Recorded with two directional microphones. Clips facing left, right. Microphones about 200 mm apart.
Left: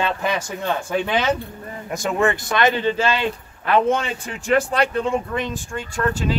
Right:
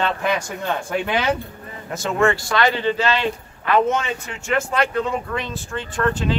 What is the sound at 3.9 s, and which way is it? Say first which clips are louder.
Speech: left 1 dB; 35° left (ahead or behind).